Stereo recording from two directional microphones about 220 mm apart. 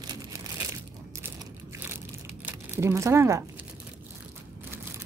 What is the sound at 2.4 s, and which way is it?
Speech, 10° right (ahead or behind).